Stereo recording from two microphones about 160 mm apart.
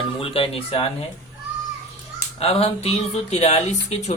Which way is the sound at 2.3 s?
40° left (ahead or behind).